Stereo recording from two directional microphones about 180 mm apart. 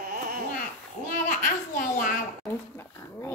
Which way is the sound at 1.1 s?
45° left (ahead or behind).